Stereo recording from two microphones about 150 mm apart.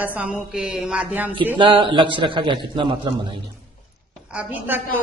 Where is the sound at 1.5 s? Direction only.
35° right (ahead or behind).